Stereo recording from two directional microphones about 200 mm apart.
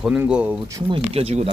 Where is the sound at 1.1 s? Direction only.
30° right (ahead or behind).